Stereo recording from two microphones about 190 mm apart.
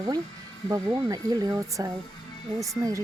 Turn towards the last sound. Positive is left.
turn(degrees=-15)  # may be behind; listen again after turning